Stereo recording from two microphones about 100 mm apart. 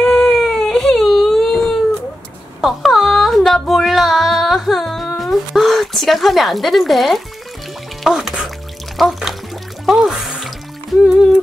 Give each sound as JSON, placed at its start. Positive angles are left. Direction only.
{"t": 0.0, "sound": "a sound", "side_deg": 5}
{"t": 2.6, "sound": "music", "side_deg": 0}
{"t": 8.0, "sound": "speech", "side_deg": -5}
{"t": 9.8, "sound": "music", "side_deg": -5}